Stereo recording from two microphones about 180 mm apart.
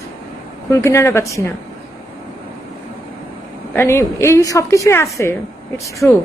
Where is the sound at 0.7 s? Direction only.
15° left (ahead or behind).